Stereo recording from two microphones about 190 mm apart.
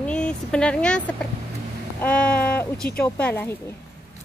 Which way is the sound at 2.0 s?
5° left (ahead or behind).